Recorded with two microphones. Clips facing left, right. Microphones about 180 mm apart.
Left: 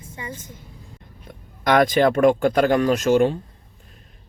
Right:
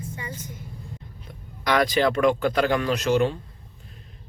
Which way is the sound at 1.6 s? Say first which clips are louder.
Left 4 dB; 50° left (ahead or behind).